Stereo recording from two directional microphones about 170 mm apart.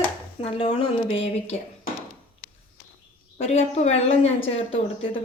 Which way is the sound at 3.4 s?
40° left (ahead or behind).